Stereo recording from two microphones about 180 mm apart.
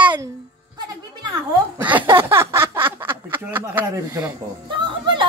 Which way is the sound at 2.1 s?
15° right (ahead or behind).